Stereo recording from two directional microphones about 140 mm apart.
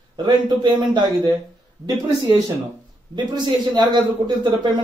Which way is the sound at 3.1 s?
30° right (ahead or behind).